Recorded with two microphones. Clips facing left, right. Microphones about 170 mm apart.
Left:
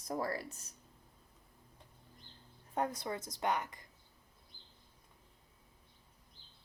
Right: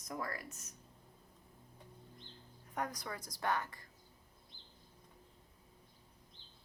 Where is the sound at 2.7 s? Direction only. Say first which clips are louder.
Left 5 dB; 25° left (ahead or behind).